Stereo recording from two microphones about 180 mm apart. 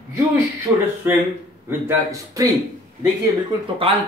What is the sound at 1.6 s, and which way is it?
Speech, 15° right (ahead or behind).